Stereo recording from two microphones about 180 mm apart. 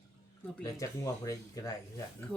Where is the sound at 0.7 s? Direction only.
20° left (ahead or behind).